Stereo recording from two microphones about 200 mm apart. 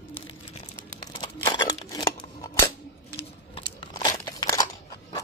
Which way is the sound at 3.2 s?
25° left (ahead or behind).